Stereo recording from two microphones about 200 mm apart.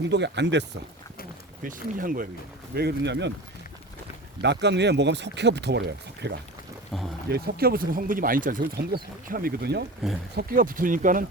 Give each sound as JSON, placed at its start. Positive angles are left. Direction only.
{"t": 0.0, "sound": "speech", "side_deg": -60}
{"t": 1.6, "sound": "speech", "side_deg": -45}
{"t": 2.7, "sound": "speech", "side_deg": -55}
{"t": 4.4, "sound": "speech", "side_deg": -60}
{"t": 6.9, "sound": "speech", "side_deg": 0}
{"t": 7.3, "sound": "speech", "side_deg": -50}